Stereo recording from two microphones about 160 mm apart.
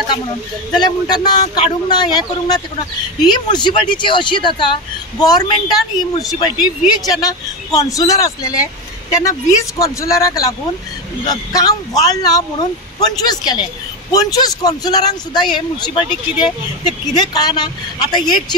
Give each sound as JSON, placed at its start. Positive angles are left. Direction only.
{"t": 0.7, "sound": "speech", "side_deg": 25}
{"t": 7.1, "sound": "speech", "side_deg": 25}